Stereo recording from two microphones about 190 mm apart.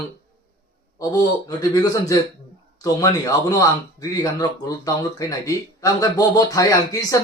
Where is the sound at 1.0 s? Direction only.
20° left (ahead or behind).